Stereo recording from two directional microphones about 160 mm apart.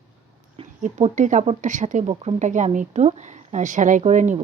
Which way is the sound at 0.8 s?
50° right (ahead or behind).